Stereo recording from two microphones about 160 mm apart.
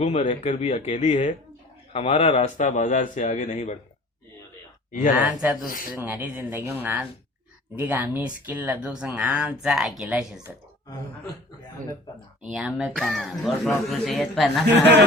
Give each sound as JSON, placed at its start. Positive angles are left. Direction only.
{"t": 0.0, "sound": "speech", "side_deg": 40}
{"t": 1.9, "sound": "speech", "side_deg": 35}
{"t": 4.9, "sound": "speech", "side_deg": 50}
{"t": 5.2, "sound": "speech", "side_deg": -10}
{"t": 5.6, "sound": "speech", "side_deg": 60}
{"t": 5.9, "sound": "speech", "side_deg": -10}
{"t": 12.5, "sound": "speech", "side_deg": 0}